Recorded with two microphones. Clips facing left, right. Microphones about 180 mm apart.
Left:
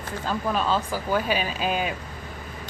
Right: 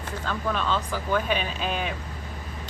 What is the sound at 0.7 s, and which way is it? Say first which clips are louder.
Speech: left 2 dB; 5° left (ahead or behind).